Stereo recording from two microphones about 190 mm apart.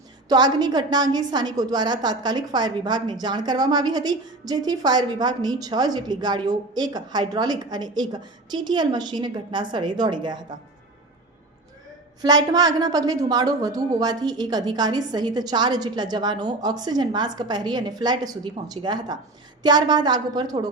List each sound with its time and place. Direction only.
0.3 s a woman's voice: 20° right (ahead or behind)
12.2 s a woman's voice: 20° right (ahead or behind)